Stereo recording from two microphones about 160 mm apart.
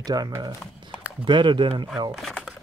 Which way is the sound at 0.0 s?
25° right (ahead or behind).